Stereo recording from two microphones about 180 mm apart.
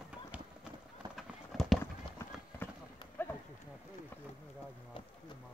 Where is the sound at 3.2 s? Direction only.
10° left (ahead or behind).